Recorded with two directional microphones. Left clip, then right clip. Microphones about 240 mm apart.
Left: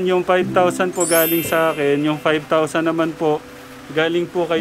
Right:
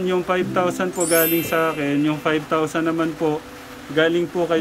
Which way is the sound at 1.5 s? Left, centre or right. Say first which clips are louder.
Left 4 dB; centre.